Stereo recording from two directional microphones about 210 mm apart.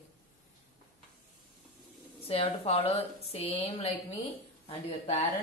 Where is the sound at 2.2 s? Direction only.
25° left (ahead or behind).